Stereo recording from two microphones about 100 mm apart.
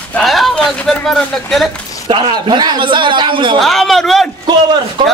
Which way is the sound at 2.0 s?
55° right (ahead or behind).